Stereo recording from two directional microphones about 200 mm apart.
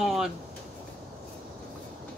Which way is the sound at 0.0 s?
Centre (ahead or behind).